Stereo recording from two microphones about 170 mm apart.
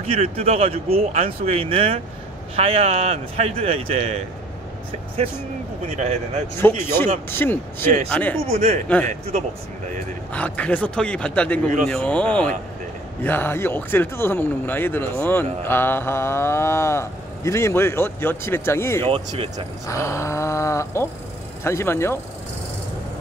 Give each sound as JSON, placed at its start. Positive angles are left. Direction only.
{"t": 0.0, "sound": "speech", "side_deg": -35}
{"t": 5.9, "sound": "speech", "side_deg": -40}
{"t": 6.6, "sound": "cattle", "side_deg": 15}
{"t": 8.5, "sound": "speech", "side_deg": -35}
{"t": 10.3, "sound": "cattle", "side_deg": 10}
{"t": 11.9, "sound": "speech", "side_deg": 5}
{"t": 13.2, "sound": "cattle", "side_deg": 10}
{"t": 19.0, "sound": "speech", "side_deg": -35}
{"t": 19.9, "sound": "cattle", "side_deg": 15}